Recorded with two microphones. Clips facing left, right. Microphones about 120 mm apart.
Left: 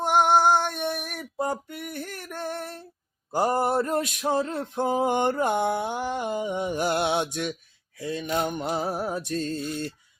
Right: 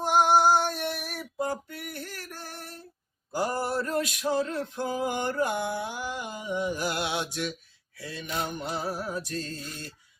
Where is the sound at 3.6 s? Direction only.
55° left (ahead or behind).